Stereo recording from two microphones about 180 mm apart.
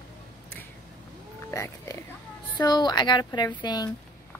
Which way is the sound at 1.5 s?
15° left (ahead or behind).